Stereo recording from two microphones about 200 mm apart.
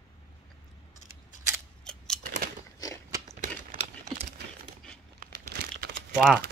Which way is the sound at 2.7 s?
15° left (ahead or behind).